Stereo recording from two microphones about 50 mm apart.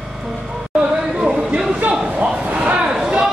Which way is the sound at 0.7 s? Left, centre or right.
Centre.